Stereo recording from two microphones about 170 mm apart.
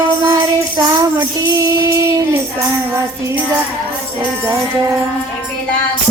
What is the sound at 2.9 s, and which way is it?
Music, 15° right (ahead or behind).